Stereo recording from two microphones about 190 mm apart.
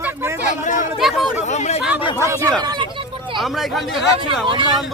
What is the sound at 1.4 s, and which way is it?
Speech, 35° left (ahead or behind).